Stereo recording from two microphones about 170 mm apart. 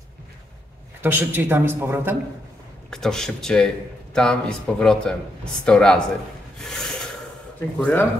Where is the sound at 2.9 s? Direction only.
Centre (ahead or behind).